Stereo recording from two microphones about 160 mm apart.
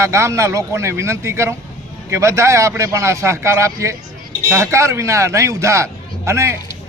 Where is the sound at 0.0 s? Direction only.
20° right (ahead or behind).